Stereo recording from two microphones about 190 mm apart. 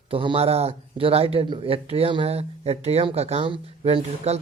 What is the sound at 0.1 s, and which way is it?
A man's voice, 30° right (ahead or behind).